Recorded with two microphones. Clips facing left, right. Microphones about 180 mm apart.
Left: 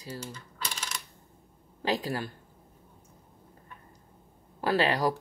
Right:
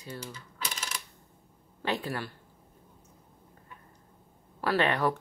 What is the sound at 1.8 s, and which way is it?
Speech, 35° left (ahead or behind).